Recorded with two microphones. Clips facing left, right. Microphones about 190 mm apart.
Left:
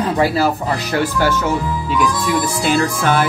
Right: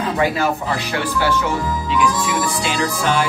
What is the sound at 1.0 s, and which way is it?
Music, 45° left (ahead or behind).